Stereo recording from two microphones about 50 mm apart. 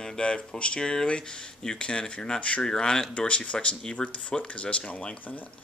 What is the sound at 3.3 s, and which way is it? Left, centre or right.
Speech, left.